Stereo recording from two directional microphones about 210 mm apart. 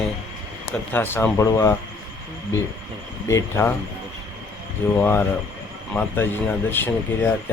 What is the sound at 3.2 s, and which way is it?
Speech, 15° left (ahead or behind).